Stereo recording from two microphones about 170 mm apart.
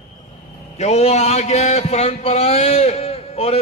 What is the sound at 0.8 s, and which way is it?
A man's voice, 40° left (ahead or behind).